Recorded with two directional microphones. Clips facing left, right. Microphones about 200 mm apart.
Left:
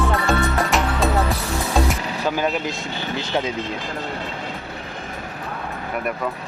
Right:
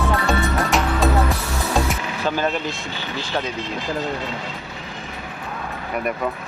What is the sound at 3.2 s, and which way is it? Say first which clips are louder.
Vehicle: left 2 dB; 20° left (ahead or behind).